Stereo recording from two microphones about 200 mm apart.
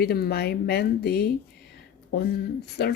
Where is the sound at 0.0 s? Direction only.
50° left (ahead or behind).